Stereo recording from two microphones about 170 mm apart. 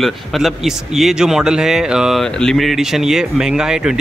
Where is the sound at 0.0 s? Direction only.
Centre (ahead or behind).